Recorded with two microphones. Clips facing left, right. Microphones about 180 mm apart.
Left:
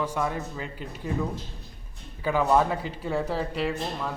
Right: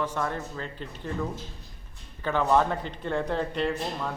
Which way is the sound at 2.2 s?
5° left (ahead or behind).